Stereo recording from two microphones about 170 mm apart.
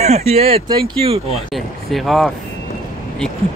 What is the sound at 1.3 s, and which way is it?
Speech, centre (ahead or behind).